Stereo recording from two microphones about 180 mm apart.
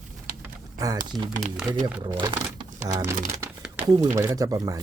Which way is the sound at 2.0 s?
25° right (ahead or behind).